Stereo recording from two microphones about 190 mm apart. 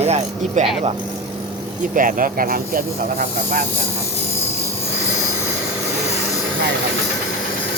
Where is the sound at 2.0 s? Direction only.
45° right (ahead or behind).